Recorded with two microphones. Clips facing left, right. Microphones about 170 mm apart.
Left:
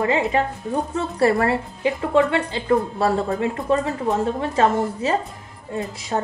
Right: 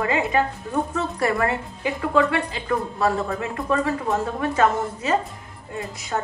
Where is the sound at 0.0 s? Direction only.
25° left (ahead or behind).